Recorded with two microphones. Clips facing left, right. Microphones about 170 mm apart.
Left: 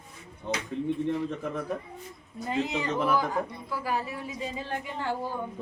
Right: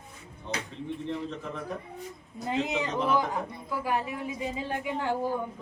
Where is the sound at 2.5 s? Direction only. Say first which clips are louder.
Even; 20° right (ahead or behind).